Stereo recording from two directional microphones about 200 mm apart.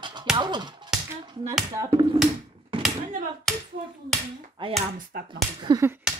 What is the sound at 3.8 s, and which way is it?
Speech, 40° right (ahead or behind).